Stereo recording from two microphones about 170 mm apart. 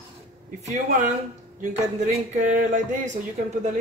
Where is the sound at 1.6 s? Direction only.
45° right (ahead or behind).